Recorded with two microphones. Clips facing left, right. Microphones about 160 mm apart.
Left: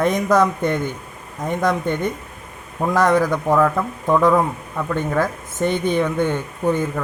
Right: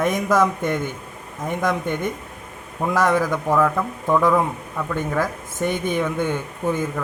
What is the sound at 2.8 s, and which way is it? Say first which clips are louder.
Speech: left 3 dB; 15° left (ahead or behind).